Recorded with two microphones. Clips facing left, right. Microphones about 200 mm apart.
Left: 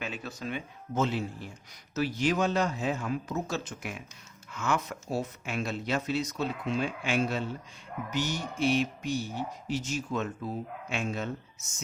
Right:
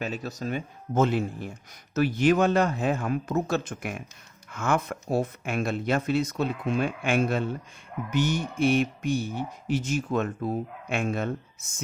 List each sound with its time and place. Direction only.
0.0 s speech: 40° right (ahead or behind); by 11.7 s 55° right (ahead or behind)